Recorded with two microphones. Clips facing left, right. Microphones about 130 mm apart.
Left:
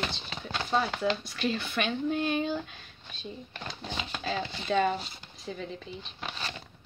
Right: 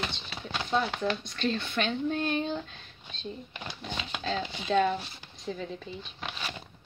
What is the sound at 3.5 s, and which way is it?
Speech, 5° right (ahead or behind).